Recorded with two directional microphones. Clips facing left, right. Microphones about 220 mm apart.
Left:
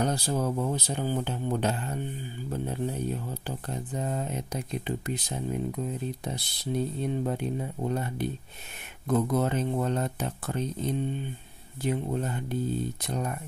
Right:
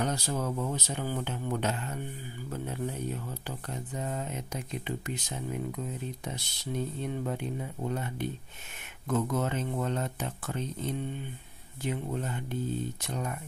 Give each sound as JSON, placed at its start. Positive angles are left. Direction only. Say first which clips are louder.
{"t": 0.0, "sound": "speech", "louder": "left 4 dB", "side_deg": 35}